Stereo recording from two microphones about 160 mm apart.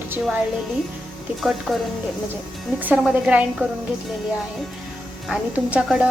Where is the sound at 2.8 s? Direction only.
5° right (ahead or behind).